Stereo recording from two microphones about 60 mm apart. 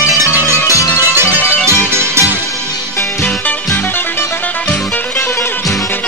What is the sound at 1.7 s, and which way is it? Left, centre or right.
Music, right.